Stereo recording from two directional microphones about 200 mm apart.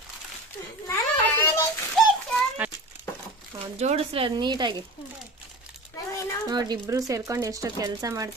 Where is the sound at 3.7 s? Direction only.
30° right (ahead or behind).